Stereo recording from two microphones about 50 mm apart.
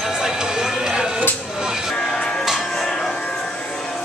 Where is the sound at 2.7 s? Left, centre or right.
Centre.